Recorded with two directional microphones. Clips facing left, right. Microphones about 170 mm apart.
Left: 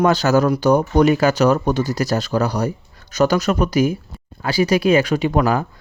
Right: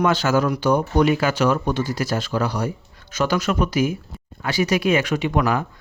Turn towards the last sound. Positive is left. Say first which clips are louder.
# left 3 dB
turn(degrees=35)  # may be behind; listen again after turning